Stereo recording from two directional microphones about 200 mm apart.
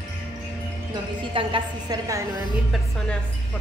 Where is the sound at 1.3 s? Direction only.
20° right (ahead or behind).